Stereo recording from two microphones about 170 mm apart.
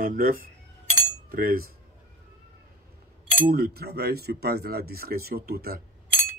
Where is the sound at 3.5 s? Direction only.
65° right (ahead or behind).